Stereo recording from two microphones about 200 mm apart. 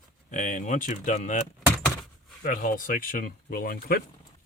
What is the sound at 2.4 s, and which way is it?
Speech, 40° left (ahead or behind).